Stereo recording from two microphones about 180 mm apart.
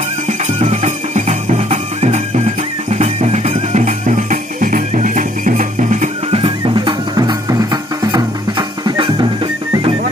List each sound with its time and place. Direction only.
0.3 s music: 35° right (ahead or behind)